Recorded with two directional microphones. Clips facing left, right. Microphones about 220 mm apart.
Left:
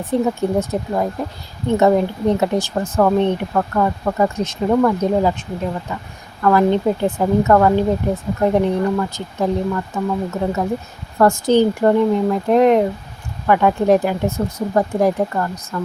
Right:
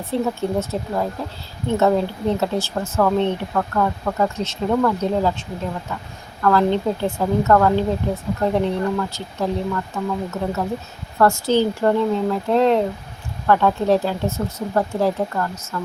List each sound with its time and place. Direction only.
0.0 s speech: 15° left (ahead or behind)